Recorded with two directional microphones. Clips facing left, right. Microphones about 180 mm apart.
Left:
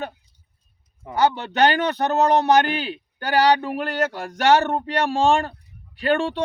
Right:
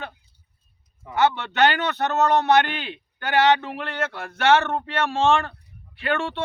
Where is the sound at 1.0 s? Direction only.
35° left (ahead or behind).